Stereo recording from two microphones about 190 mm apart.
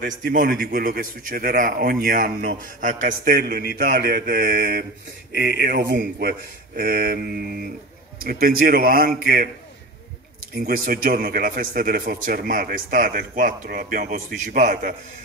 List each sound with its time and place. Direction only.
0.0 s a man's voice: 50° right (ahead or behind)
10.5 s a man's voice: 50° right (ahead or behind)